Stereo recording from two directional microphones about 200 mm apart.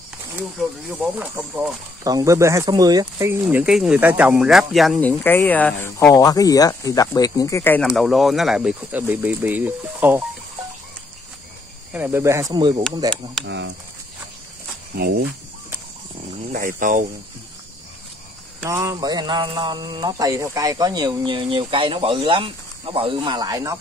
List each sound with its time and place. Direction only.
0.4 s speech: 5° right (ahead or behind)
3.4 s speech: 5° right (ahead or behind); by 7.8 s 10° left (ahead or behind)
7.8 s speech: centre (ahead or behind)
11.9 s speech: 10° right (ahead or behind)
13.5 s speech: 60° right (ahead or behind)
15.0 s speech: 50° right (ahead or behind)
16.5 s speech: 40° right (ahead or behind)
18.6 s speech: 15° right (ahead or behind)